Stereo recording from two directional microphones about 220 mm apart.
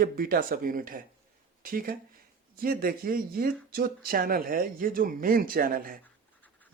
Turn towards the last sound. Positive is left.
turn(degrees=-40)  # may be behind; listen again after turning